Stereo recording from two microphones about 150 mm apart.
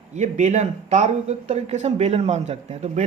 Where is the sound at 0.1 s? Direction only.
55° right (ahead or behind).